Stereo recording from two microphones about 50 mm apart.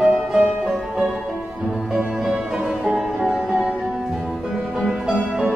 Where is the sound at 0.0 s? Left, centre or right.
Centre.